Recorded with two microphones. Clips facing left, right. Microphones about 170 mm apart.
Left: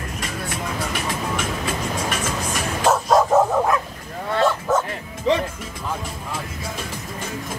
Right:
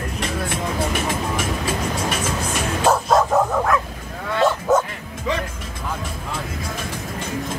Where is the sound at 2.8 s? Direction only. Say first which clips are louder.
Even; centre (ahead or behind).